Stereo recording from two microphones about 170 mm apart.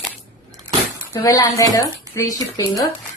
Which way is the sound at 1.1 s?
20° left (ahead or behind).